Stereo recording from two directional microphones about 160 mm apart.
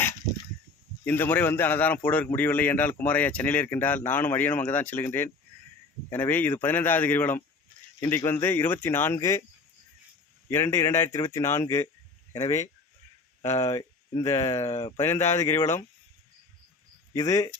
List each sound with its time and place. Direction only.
1.0 s speech: 10° left (ahead or behind)
10.5 s speech: 15° left (ahead or behind)
17.2 s speech: 20° left (ahead or behind)